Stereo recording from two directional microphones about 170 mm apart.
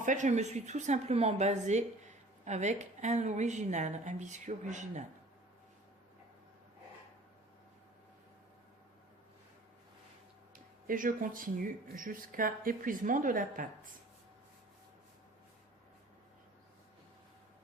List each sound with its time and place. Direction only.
0.0 s a woman's voice: 45° right (ahead or behind)
10.8 s a woman's voice: 55° right (ahead or behind)